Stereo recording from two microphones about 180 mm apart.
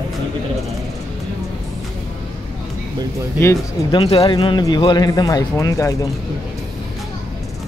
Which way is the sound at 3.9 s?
30° left (ahead or behind).